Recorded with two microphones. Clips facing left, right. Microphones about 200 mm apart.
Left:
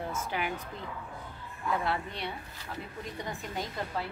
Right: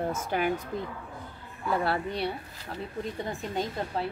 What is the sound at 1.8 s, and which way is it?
Speech, 35° right (ahead or behind).